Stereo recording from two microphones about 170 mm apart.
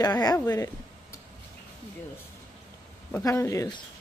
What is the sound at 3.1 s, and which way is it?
Speech, 20° left (ahead or behind).